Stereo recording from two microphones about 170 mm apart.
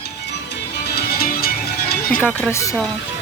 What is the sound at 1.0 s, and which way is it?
Music, 65° left (ahead or behind).